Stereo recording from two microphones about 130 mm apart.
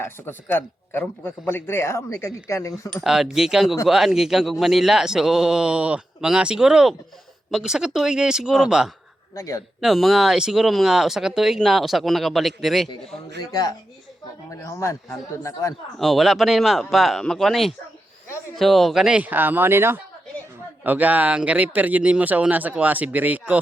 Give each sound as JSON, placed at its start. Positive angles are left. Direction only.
{"t": 0.0, "sound": "speech", "side_deg": 15}
{"t": 2.9, "sound": "speech", "side_deg": -5}
{"t": 9.3, "sound": "speech", "side_deg": 25}
{"t": 9.8, "sound": "speech", "side_deg": 0}
{"t": 13.5, "sound": "speech", "side_deg": 30}
{"t": 16.0, "sound": "speech", "side_deg": 0}